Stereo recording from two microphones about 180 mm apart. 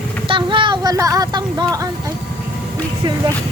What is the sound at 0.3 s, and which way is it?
Music, 25° right (ahead or behind).